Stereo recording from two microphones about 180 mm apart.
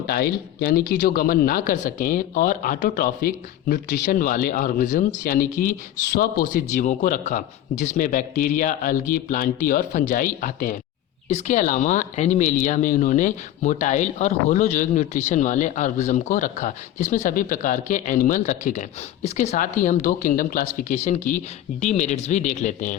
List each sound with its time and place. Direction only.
0.1 s speech: 55° left (ahead or behind)